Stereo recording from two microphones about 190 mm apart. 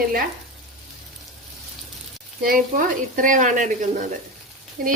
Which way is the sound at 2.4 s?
45° right (ahead or behind).